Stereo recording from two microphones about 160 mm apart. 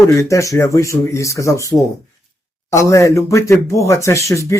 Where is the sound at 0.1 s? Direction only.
20° left (ahead or behind).